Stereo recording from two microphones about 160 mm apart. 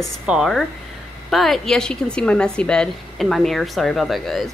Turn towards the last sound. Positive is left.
turn(degrees=0)  # may be behind; listen again after turning